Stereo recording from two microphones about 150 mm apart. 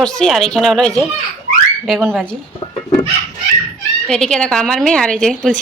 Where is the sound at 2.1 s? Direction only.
5° left (ahead or behind).